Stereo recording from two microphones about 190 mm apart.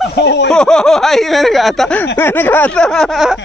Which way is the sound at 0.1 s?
65° left (ahead or behind).